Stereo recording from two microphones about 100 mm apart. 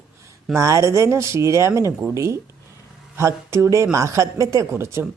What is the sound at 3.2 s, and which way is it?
Speech, 30° right (ahead or behind).